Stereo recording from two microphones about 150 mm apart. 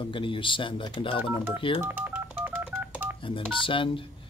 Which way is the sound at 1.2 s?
15° right (ahead or behind).